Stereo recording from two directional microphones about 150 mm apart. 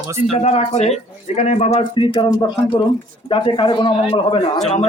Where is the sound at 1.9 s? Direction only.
35° left (ahead or behind).